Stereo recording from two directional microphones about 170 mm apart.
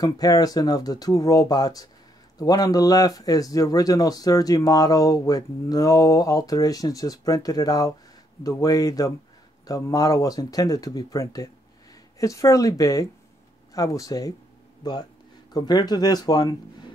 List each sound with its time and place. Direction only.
0.0 s speech: 20° left (ahead or behind)